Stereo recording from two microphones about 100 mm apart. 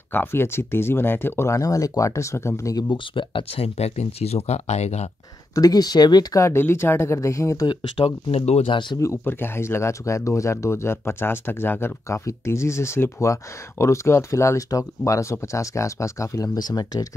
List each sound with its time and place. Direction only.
0.1 s speech: 20° left (ahead or behind)
2.9 s speech: 55° left (ahead or behind); by 5.1 s 90° left
5.5 s speech: 40° left (ahead or behind)
6.4 s speech: 25° left (ahead or behind)
7.6 s speech: 65° left (ahead or behind); by 8.7 s 85° left
9.0 s speech: 25° left (ahead or behind); by 17.1 s 40° left (ahead or behind)